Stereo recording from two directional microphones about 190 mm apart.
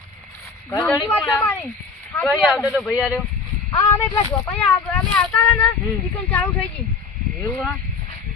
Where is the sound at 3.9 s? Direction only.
15° left (ahead or behind).